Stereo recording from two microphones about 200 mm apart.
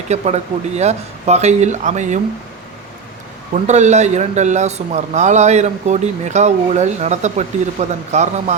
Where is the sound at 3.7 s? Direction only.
35° right (ahead or behind).